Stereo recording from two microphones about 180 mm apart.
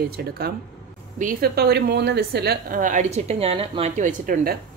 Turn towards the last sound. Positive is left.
turn(degrees=-50)  # may be behind; listen again after turning